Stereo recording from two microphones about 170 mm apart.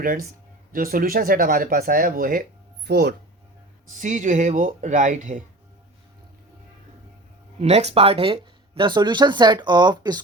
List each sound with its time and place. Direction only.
0.0 s speech: 55° right (ahead or behind)
2.8 s speech: 75° right (ahead or behind)
3.9 s speech: 45° right (ahead or behind)
7.6 s speech: 40° right (ahead or behind)